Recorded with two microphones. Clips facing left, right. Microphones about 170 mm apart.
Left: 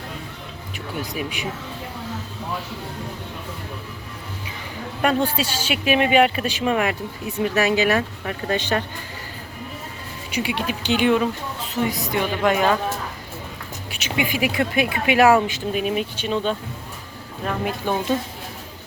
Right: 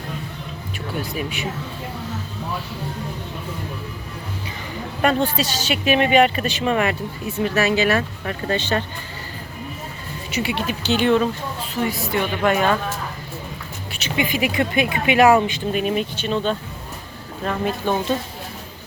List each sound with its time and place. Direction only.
1.1 s speech: 15° left (ahead or behind)
5.0 s speech: 10° left (ahead or behind)
10.3 s speech: 10° left (ahead or behind)
11.6 s speech: 20° left (ahead or behind)
13.9 s speech: 10° left (ahead or behind)